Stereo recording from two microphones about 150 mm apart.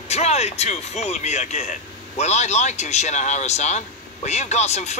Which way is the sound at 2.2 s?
50° left (ahead or behind).